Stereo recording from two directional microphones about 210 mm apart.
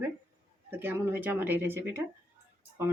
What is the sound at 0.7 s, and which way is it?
Speech, 10° right (ahead or behind).